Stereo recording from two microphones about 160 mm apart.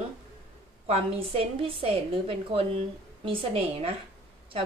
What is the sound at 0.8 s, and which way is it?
A woman's voice, 35° right (ahead or behind).